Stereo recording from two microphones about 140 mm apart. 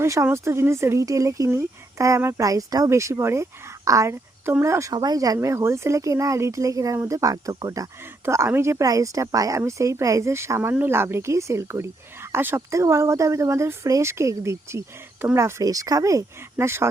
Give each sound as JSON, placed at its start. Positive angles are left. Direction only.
{"t": 0.0, "sound": "speech", "side_deg": -20}